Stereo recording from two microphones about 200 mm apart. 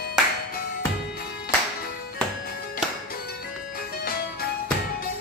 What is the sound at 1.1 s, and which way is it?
Music, 50° left (ahead or behind).